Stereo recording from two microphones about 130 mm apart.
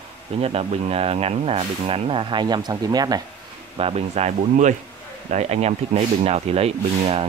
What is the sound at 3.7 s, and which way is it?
Speech, 50° right (ahead or behind).